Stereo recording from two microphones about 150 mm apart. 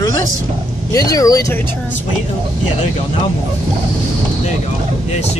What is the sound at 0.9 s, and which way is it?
Speech, 25° left (ahead or behind).